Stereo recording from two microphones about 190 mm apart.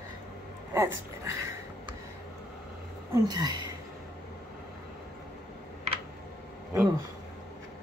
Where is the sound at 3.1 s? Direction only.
20° right (ahead or behind).